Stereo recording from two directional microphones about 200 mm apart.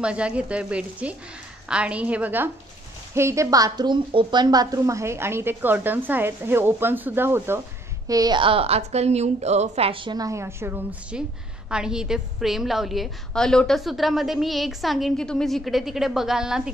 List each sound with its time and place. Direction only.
0.0 s a woman's voice: 5° right (ahead or behind)